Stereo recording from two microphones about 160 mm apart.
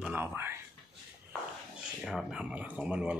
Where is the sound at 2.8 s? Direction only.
5° right (ahead or behind).